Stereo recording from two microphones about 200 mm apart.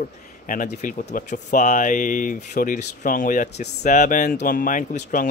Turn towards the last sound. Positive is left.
turn(degrees=40)  # may be behind; listen again after turning